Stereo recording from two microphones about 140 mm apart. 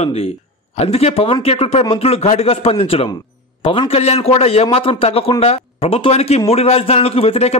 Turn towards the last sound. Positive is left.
turn(degrees=45)  # may be behind; listen again after turning